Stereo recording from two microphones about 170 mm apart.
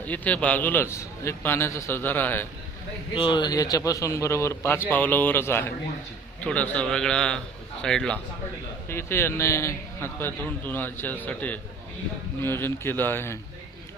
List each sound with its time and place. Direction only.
0.0 s a man's voice: 10° left (ahead or behind)
3.2 s a man's voice: 30° left (ahead or behind); by 8.2 s 5° left (ahead or behind)
8.9 s a man's voice: 15° left (ahead or behind)